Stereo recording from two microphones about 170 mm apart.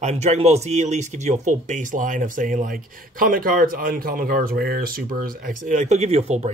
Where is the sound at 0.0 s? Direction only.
40° right (ahead or behind).